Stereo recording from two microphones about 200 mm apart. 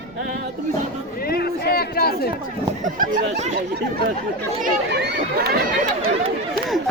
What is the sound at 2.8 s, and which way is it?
Speech, 40° right (ahead or behind).